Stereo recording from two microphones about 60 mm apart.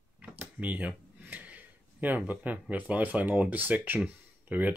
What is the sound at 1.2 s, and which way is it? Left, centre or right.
Speech, right.